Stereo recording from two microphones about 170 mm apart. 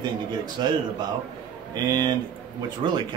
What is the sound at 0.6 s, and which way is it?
Speech, 25° right (ahead or behind).